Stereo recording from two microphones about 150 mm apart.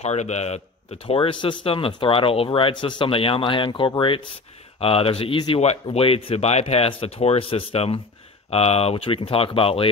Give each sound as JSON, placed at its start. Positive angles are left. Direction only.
{"t": 0.0, "sound": "a man's voice", "side_deg": 50}